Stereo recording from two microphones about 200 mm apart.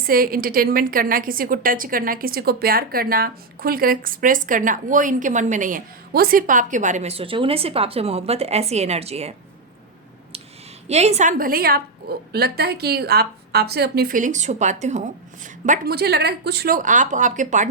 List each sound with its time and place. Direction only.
0.0 s a woman's voice: 45° right (ahead or behind); by 9.3 s 30° right (ahead or behind)
10.8 s a woman's voice: 35° right (ahead or behind)